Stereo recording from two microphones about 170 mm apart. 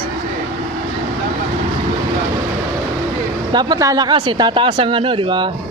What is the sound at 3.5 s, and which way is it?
Speech, 20° right (ahead or behind).